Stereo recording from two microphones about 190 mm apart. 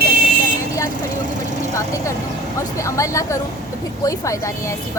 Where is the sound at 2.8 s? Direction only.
15° left (ahead or behind).